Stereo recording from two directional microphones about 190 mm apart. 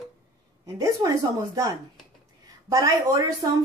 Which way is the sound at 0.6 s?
20° right (ahead or behind).